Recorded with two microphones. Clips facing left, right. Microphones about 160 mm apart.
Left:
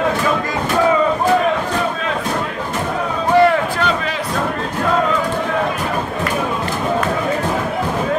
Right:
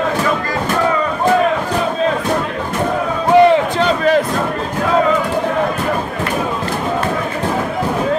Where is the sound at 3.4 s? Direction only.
20° right (ahead or behind).